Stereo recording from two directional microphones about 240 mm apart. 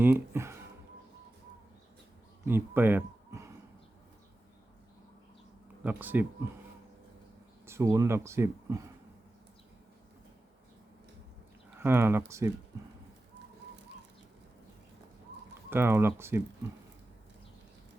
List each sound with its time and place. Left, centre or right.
0.0 s speech: centre
2.4 s speech: centre
5.8 s speech: centre
7.6 s speech: centre
11.8 s speech: centre
15.7 s speech: centre